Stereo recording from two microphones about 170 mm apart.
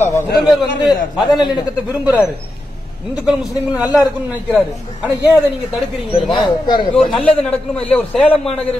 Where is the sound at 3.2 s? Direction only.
5° right (ahead or behind).